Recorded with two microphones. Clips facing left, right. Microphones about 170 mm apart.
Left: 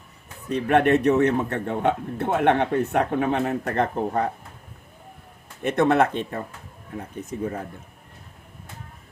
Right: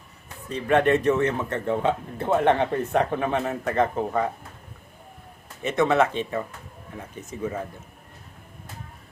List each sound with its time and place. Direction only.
0.4 s speech: 60° left (ahead or behind)
5.6 s speech: 55° left (ahead or behind)